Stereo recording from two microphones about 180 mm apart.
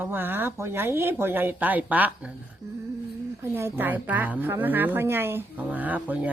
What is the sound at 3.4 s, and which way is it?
Speech, 15° right (ahead or behind).